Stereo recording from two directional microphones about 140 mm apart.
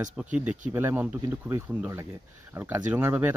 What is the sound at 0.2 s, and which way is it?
Speech, 10° right (ahead or behind).